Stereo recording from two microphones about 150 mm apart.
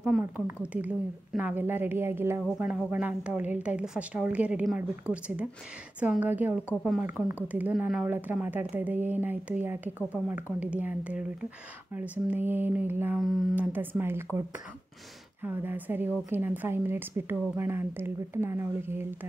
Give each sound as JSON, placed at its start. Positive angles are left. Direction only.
{"t": 0.0, "sound": "speech", "side_deg": -10}
{"t": 13.2, "sound": "speech", "side_deg": 0}
{"t": 13.6, "sound": "speech", "side_deg": -10}
{"t": 15.4, "sound": "speech", "side_deg": -10}